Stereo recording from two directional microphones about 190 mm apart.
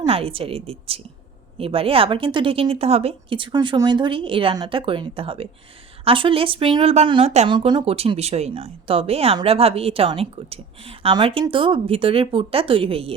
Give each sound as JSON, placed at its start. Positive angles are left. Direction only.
{"t": 0.1, "sound": "speech", "side_deg": -30}